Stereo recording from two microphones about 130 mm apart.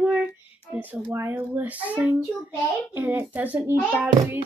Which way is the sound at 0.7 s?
10° right (ahead or behind).